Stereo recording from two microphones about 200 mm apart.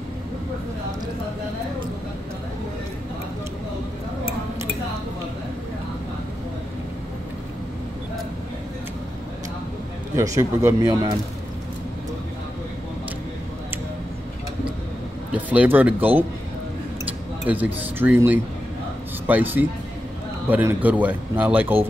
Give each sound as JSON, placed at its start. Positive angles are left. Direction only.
{"t": 10.1, "sound": "speech", "side_deg": -15}
{"t": 15.5, "sound": "speech", "side_deg": -5}
{"t": 17.5, "sound": "speech", "side_deg": -10}